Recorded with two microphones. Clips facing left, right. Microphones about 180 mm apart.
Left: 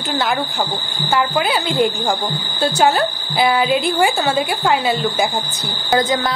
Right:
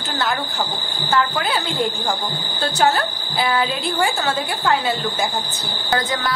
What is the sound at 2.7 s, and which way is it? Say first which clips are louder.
A woman's voice: left 2 dB; 15° left (ahead or behind).